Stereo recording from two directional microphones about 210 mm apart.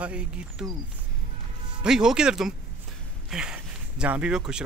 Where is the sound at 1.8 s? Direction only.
5° right (ahead or behind).